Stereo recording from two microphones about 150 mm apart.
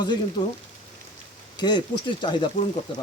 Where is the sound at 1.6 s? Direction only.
30° left (ahead or behind).